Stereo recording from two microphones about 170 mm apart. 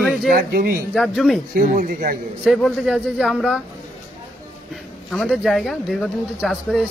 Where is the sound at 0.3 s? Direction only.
65° right (ahead or behind).